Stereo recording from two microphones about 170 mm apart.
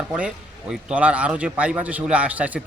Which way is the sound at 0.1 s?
5° right (ahead or behind).